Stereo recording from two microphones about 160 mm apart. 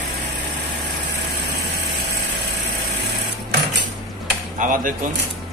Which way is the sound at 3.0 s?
90° right.